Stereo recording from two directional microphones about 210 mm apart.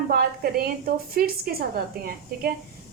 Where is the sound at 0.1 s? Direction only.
45° right (ahead or behind).